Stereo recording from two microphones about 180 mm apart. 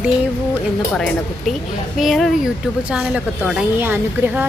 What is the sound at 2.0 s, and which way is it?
A woman's voice, centre (ahead or behind).